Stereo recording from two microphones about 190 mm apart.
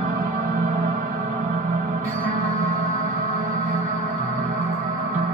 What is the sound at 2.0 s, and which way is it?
Music, 45° right (ahead or behind).